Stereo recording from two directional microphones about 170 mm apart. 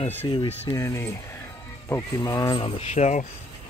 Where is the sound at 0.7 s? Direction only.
15° left (ahead or behind).